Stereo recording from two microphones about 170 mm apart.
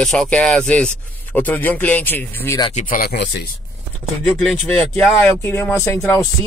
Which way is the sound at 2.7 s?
55° left (ahead or behind).